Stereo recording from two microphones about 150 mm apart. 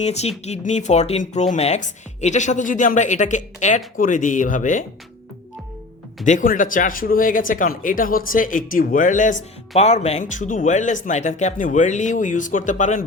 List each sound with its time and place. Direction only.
0.0 s speech: 45° left (ahead or behind)
6.2 s speech: 60° left (ahead or behind)
9.7 s speech: 45° left (ahead or behind)